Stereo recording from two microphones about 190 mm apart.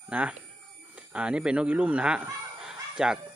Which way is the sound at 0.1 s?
5° right (ahead or behind).